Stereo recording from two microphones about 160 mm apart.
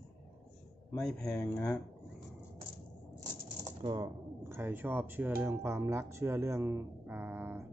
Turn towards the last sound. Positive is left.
turn(degrees=-15)  # may be behind; listen again after turning